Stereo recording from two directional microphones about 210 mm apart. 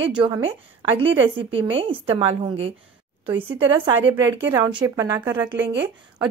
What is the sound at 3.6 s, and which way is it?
Speech, 10° right (ahead or behind).